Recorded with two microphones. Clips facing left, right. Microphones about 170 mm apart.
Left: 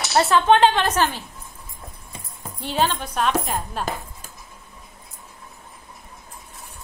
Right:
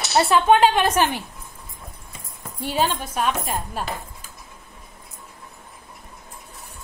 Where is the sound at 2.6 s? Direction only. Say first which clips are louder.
Even; 10° right (ahead or behind).